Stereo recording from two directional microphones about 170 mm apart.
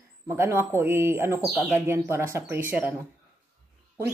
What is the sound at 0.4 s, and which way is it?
Speech, 15° right (ahead or behind).